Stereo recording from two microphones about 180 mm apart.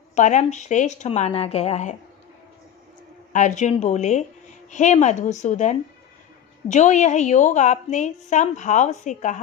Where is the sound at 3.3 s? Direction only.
45° left (ahead or behind).